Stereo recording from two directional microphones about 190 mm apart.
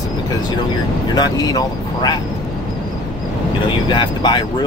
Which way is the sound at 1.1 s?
20° left (ahead or behind).